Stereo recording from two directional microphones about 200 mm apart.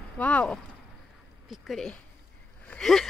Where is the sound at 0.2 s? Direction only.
5° left (ahead or behind).